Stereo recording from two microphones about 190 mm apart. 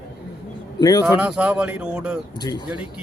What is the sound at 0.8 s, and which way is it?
Speech, 20° left (ahead or behind).